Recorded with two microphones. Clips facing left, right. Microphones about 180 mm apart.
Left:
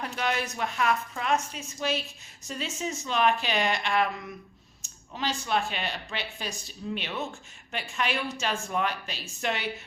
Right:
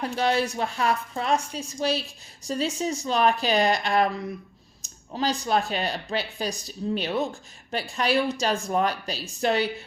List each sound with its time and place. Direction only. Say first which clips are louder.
0.2 s speech: right 6 dB; 30° right (ahead or behind)